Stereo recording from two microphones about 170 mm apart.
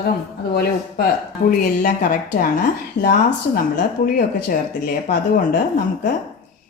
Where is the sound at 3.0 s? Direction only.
90° left.